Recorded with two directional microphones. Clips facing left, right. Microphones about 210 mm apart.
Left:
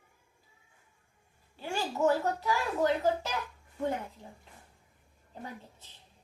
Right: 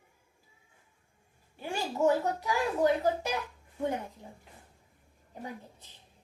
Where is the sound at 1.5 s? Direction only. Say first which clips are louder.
Even; 15° right (ahead or behind).